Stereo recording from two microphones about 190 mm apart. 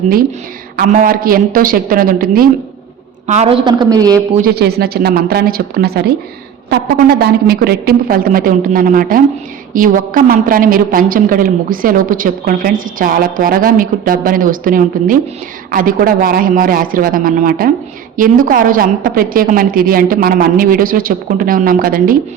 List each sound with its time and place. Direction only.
0.8 s a woman's voice: 45° right (ahead or behind)
3.2 s a woman's voice: 35° right (ahead or behind)
4.4 s a woman's voice: 55° right (ahead or behind)